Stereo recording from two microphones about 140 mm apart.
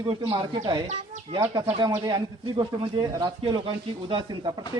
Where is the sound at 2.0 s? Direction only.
35° right (ahead or behind).